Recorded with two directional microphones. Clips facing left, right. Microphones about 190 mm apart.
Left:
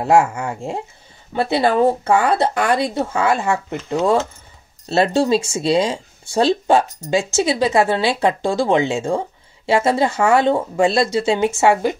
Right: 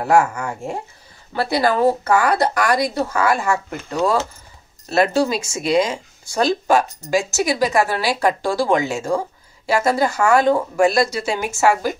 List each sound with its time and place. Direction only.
0.0 s speech: 25° left (ahead or behind)